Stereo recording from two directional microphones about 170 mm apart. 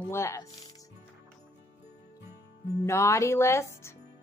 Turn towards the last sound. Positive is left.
turn(degrees=15)  # may be behind; listen again after turning